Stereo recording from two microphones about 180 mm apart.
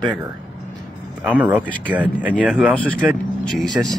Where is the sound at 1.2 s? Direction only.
10° right (ahead or behind).